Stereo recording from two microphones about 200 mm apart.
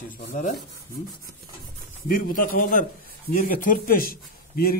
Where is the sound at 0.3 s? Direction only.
40° left (ahead or behind).